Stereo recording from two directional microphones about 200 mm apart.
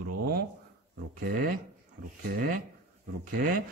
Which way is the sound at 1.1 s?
45° right (ahead or behind).